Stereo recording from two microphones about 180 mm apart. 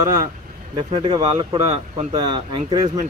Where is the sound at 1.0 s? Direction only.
25° right (ahead or behind).